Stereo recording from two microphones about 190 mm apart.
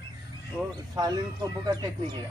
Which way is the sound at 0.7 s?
20° right (ahead or behind).